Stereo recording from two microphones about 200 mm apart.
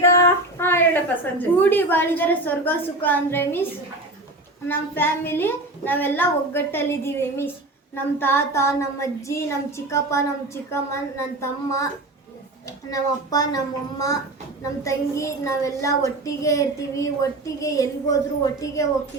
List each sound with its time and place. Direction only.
0.0 s a woman's voice: 15° left (ahead or behind)
4.7 s a woman's voice: 10° left (ahead or behind)
14.8 s a woman's voice: 15° left (ahead or behind)